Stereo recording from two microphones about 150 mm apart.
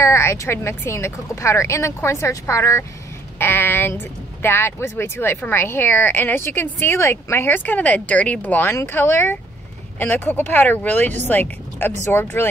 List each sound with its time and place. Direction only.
0.0 s speech: 20° left (ahead or behind)